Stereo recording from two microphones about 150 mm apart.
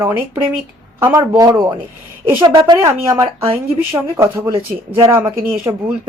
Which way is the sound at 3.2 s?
40° right (ahead or behind).